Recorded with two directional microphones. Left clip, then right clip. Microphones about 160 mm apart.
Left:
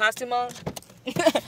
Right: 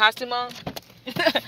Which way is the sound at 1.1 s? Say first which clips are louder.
Even; 35° left (ahead or behind).